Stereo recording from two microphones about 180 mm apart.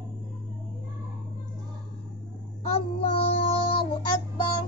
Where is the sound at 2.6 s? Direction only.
35° left (ahead or behind).